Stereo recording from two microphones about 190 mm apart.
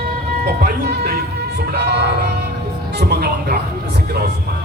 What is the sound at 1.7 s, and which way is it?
Music, 60° right (ahead or behind).